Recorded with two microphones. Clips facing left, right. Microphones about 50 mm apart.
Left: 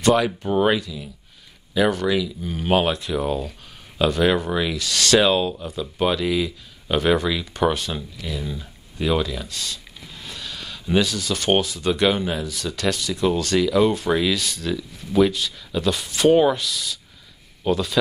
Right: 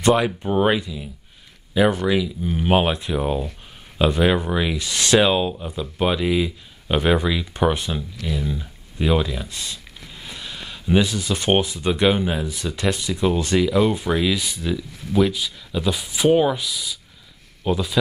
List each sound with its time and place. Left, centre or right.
0.0 s speech: centre